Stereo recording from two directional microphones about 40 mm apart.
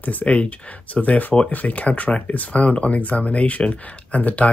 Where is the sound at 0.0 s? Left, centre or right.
Left.